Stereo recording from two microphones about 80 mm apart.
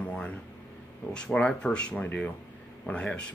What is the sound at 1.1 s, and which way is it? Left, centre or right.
Speech, centre.